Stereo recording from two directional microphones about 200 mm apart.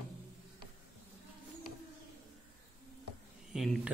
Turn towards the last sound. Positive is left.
turn(degrees=0)  # may be behind; listen again after turning